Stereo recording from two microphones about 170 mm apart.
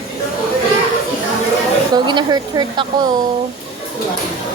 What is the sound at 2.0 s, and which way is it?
Speech, 25° right (ahead or behind).